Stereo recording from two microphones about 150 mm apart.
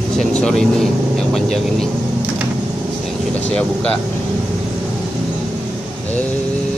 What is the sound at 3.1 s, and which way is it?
Speech, 10° left (ahead or behind).